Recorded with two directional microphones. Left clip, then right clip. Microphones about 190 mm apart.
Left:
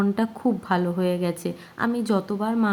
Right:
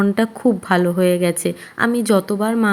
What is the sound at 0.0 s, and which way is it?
A woman's voice, 20° right (ahead or behind).